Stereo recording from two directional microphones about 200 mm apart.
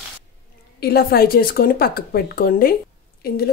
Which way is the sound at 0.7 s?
50° left (ahead or behind).